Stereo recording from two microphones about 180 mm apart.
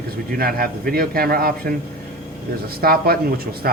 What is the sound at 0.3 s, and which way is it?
Speech, 55° right (ahead or behind).